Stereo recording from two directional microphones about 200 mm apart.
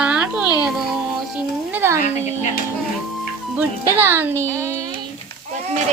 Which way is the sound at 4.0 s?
10° right (ahead or behind).